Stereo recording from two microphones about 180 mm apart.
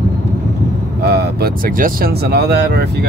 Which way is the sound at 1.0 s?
60° right (ahead or behind).